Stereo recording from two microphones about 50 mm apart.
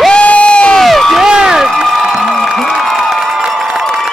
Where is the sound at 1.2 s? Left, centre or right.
Centre.